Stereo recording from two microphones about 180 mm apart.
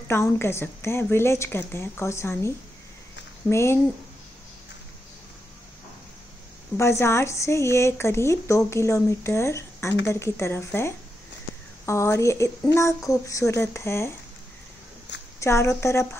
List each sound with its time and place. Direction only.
0.1 s speech: 15° left (ahead or behind)
6.8 s speech: 15° left (ahead or behind)
15.4 s speech: 15° left (ahead or behind)